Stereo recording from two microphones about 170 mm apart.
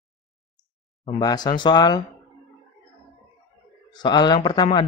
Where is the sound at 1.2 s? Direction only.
25° left (ahead or behind).